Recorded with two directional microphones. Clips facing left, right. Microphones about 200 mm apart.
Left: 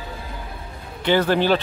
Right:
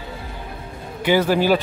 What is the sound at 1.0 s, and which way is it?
Speech, 10° right (ahead or behind).